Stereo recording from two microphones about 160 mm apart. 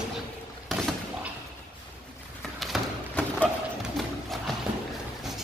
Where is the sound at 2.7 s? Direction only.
Centre (ahead or behind).